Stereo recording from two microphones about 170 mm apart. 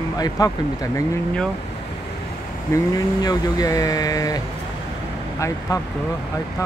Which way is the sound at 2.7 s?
20° left (ahead or behind).